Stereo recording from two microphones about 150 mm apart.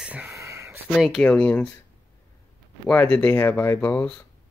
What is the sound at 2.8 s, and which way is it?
Speech, 10° left (ahead or behind).